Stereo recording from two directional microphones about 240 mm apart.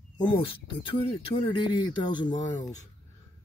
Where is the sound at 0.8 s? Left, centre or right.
Left.